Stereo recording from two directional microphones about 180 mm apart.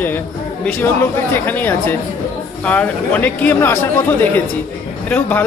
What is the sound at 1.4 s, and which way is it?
Speech, 10° left (ahead or behind).